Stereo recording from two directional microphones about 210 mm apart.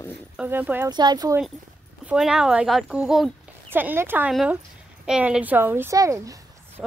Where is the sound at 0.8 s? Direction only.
20° right (ahead or behind).